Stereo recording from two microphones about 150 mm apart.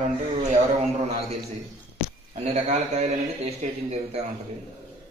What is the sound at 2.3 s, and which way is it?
A man's voice, 50° right (ahead or behind).